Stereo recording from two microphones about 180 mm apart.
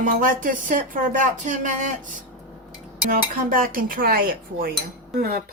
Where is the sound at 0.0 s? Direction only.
50° right (ahead or behind).